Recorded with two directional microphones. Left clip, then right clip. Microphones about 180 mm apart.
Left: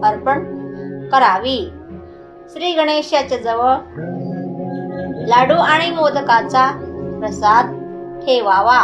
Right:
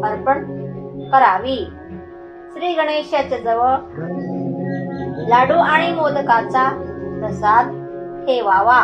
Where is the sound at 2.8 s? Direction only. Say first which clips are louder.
Left 3 dB; 45° left (ahead or behind).